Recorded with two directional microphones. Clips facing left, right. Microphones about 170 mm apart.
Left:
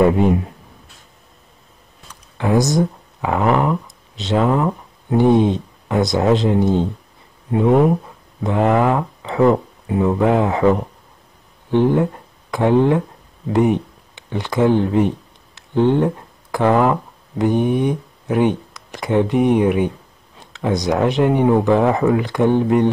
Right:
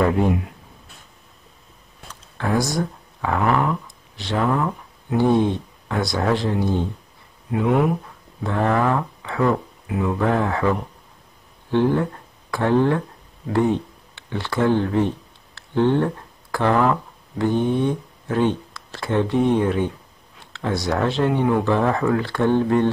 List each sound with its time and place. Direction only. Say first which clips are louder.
2.0 s speech: left 5 dB; 15° left (ahead or behind)
8.5 s speech: left 4 dB; 15° left (ahead or behind)